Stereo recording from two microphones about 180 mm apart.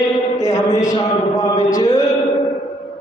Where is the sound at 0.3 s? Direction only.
20° left (ahead or behind).